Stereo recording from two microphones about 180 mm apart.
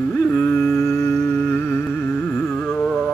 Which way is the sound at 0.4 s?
5° left (ahead or behind).